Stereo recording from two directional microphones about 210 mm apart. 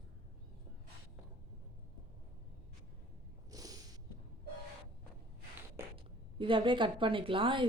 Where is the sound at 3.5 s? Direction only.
15° right (ahead or behind).